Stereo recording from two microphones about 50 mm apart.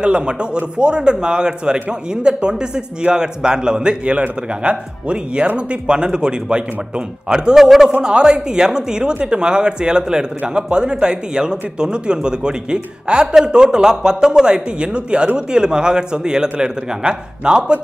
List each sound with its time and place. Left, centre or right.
0.0 s speech: centre